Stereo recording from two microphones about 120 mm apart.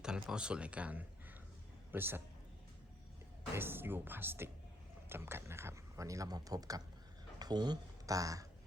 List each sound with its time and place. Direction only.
0.0 s speech: 5° right (ahead or behind)
3.5 s speech: 20° right (ahead or behind)